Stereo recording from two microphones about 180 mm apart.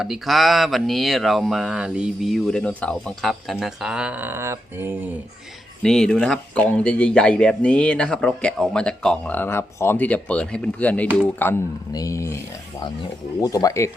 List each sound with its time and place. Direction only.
0.0 s speech: centre (ahead or behind)
5.8 s speech: 5° left (ahead or behind)
13.4 s speech: 20° left (ahead or behind)